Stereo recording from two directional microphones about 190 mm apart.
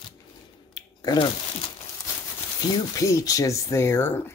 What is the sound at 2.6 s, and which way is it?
Speech, 20° left (ahead or behind).